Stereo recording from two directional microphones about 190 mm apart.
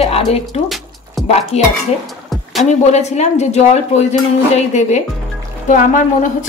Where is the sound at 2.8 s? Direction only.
35° left (ahead or behind).